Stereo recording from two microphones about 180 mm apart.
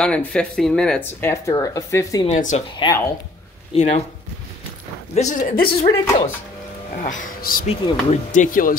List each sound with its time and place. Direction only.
0.0 s speech: 5° left (ahead or behind)
2.2 s speech: 40° left (ahead or behind)
2.7 s speech: 25° left (ahead or behind)
3.7 s speech: 35° left (ahead or behind)
5.1 s speech: 45° left (ahead or behind)
7.6 s speech: 35° left (ahead or behind)